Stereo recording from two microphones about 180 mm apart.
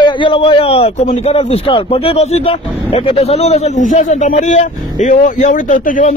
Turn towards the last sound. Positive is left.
turn(degrees=50)  # may be behind; listen again after turning